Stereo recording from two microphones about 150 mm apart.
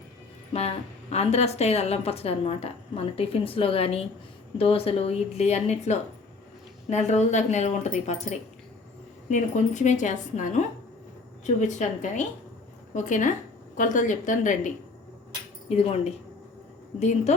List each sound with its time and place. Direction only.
0.5 s a woman's voice: 45° left (ahead or behind)
15.7 s speech: 45° left (ahead or behind)